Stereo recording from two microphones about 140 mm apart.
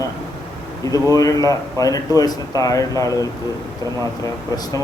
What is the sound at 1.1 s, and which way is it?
Speech, 25° left (ahead or behind).